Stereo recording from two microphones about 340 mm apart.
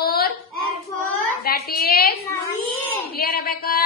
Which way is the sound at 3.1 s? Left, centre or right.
Left.